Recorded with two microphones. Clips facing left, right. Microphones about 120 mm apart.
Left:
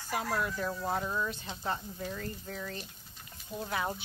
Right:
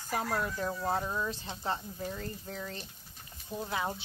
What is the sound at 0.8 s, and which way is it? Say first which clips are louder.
Speech: right 1 dB; 20° right (ahead or behind).